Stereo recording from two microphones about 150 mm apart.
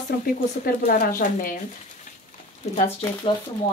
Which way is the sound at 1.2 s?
65° left (ahead or behind).